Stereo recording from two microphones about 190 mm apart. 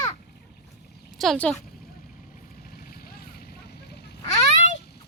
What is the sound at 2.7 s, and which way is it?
Vehicle, 55° left (ahead or behind).